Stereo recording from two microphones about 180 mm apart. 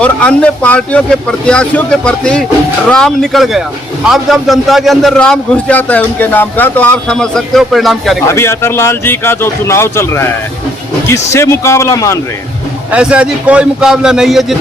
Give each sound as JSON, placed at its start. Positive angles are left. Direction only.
{"t": 0.0, "sound": "a man's voice", "side_deg": 5}
{"t": 8.3, "sound": "speech", "side_deg": 15}
{"t": 11.3, "sound": "speech", "side_deg": 15}
{"t": 12.9, "sound": "a man's voice", "side_deg": -5}